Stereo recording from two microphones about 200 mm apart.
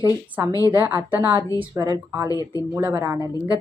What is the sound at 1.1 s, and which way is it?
A woman's voice, 15° right (ahead or behind).